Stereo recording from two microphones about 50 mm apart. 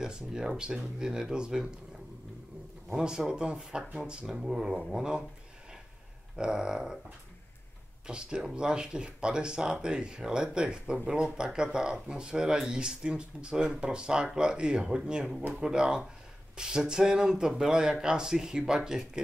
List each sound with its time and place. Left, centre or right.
0.0 s speech: centre
2.9 s speech: centre
6.3 s speech: centre
8.1 s speech: centre